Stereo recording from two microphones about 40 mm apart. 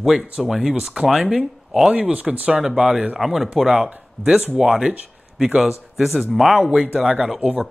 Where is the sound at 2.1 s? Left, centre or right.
Right.